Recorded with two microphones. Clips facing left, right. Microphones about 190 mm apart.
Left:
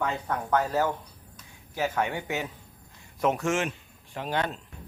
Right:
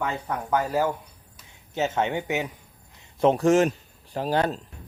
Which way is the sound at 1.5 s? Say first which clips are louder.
Right 3 dB; 25° right (ahead or behind).